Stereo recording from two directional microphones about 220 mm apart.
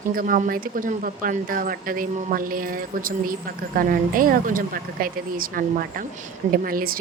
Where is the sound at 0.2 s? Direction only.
40° right (ahead or behind).